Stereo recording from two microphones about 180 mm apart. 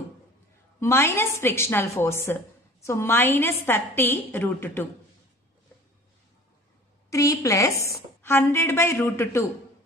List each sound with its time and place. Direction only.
0.7 s a woman's voice: 15° left (ahead or behind)
7.1 s a woman's voice: 15° left (ahead or behind)